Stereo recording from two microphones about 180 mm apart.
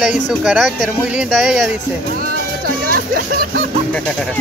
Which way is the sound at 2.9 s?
55° right (ahead or behind).